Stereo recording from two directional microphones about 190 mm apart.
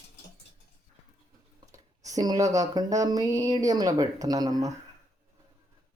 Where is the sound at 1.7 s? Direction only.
20° right (ahead or behind).